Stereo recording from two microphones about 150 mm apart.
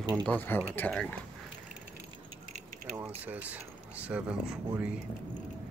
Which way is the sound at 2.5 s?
55° right (ahead or behind).